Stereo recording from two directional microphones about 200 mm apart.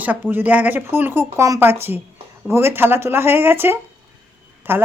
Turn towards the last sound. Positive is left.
turn(degrees=-10)  # may be behind; listen again after turning